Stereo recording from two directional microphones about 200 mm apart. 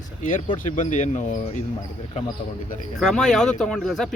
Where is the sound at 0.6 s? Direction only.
40° left (ahead or behind).